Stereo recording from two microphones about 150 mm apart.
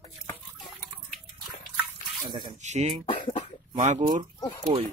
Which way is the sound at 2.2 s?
30° right (ahead or behind).